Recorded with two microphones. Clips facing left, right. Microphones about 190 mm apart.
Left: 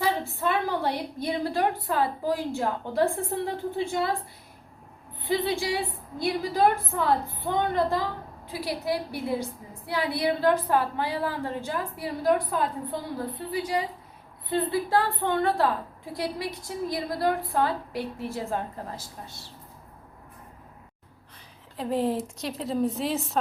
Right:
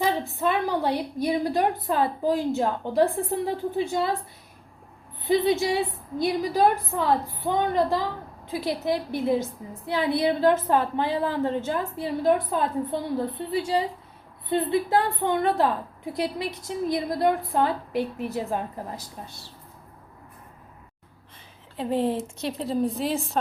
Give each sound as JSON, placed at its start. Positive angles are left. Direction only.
{"t": 0.0, "sound": "a woman's voice", "side_deg": -15}
{"t": 5.3, "sound": "a woman's voice", "side_deg": -20}
{"t": 21.8, "sound": "a woman's voice", "side_deg": 0}